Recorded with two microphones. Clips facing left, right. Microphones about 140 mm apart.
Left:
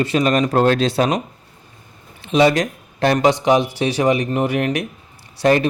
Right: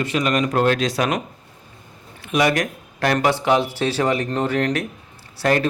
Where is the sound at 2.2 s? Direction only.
25° left (ahead or behind).